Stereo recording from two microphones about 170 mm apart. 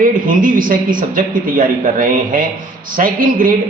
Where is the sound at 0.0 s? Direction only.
55° right (ahead or behind).